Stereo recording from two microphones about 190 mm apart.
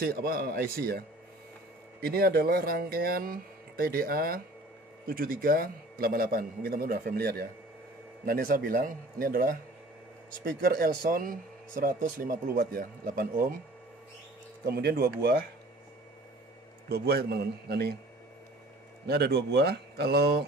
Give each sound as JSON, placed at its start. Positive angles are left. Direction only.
{"t": 0.0, "sound": "speech", "side_deg": -50}
{"t": 14.6, "sound": "speech", "side_deg": -55}
{"t": 16.9, "sound": "speech", "side_deg": -55}
{"t": 19.0, "sound": "speech", "side_deg": -60}